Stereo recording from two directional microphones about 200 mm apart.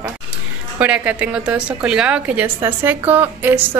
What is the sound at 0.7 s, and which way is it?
A woman's voice, 5° right (ahead or behind).